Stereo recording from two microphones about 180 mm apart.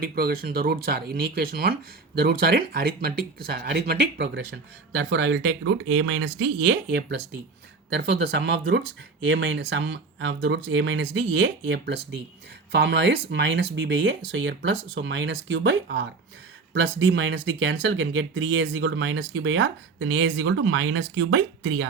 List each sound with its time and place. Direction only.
0.0 s speech: 55° right (ahead or behind)
9.2 s speech: 85° right